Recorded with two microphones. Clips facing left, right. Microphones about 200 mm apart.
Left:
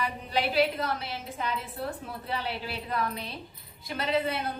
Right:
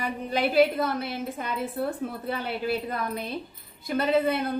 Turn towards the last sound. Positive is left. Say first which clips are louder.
# right 5 dB
turn(degrees=-50)  # may be behind; listen again after turning